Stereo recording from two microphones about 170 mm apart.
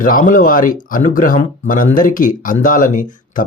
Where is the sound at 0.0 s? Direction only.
50° left (ahead or behind).